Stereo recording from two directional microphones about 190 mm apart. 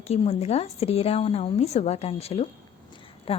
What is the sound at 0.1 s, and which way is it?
A woman's voice, 35° left (ahead or behind).